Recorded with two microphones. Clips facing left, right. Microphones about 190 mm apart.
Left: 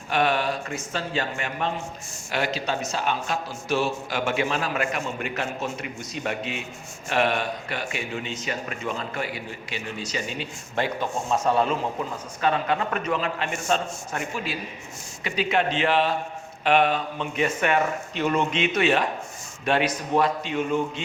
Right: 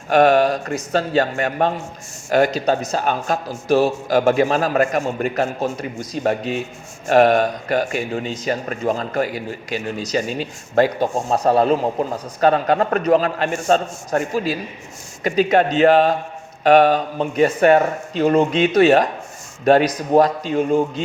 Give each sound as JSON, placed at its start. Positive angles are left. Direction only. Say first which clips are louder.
{"t": 0.1, "sound": "a man's voice", "louder": "right 10 dB", "side_deg": -45}